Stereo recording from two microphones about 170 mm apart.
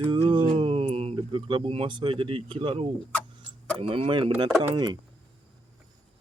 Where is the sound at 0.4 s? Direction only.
30° right (ahead or behind).